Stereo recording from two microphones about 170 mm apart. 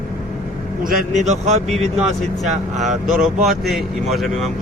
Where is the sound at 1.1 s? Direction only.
45° right (ahead or behind).